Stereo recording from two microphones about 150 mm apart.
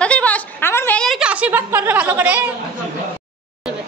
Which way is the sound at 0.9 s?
Centre (ahead or behind).